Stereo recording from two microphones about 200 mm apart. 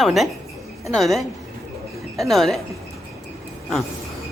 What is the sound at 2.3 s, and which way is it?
Speech, centre (ahead or behind).